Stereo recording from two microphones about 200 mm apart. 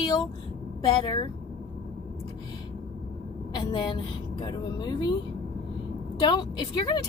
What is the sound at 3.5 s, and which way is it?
A woman's voice, 20° left (ahead or behind).